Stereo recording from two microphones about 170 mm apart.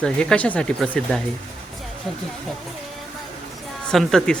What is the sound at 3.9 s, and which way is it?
Speech, 5° left (ahead or behind).